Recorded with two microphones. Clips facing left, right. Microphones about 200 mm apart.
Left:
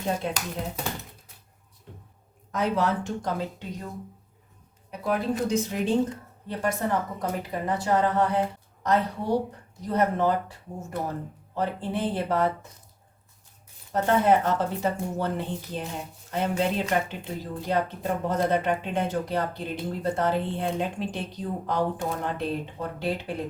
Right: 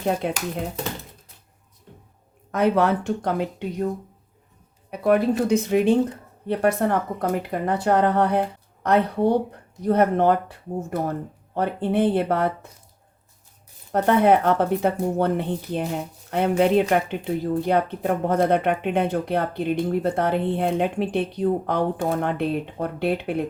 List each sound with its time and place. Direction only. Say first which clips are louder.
0.2 s speech: right 4 dB; 60° right (ahead or behind)
2.5 s speech: right 6 dB; 60° right (ahead or behind)
4.9 s speech: right 8 dB; 65° right (ahead or behind)
11.5 s speech: right 6 dB; 60° right (ahead or behind)
13.9 s speech: right 4 dB; 60° right (ahead or behind)